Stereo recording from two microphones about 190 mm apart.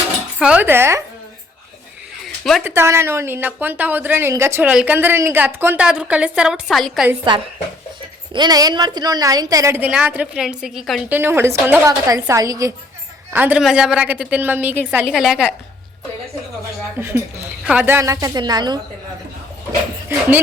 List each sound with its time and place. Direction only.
0.3 s a woman's voice: 5° right (ahead or behind)
2.2 s a sound: centre (ahead or behind)
2.6 s a woman's voice: 15° right (ahead or behind)
8.3 s a woman's voice: 20° right (ahead or behind); by 11.2 s centre (ahead or behind)
11.2 s a woman's voice: 10° right (ahead or behind)
17.0 s a woman's voice: 10° right (ahead or behind)